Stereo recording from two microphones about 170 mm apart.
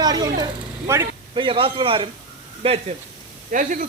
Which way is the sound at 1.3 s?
30° right (ahead or behind).